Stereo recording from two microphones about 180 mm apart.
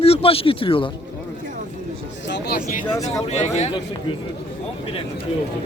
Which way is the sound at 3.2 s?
40° left (ahead or behind).